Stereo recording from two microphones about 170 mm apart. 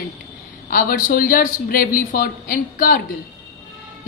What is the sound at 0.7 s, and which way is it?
A woman's voice, 55° left (ahead or behind).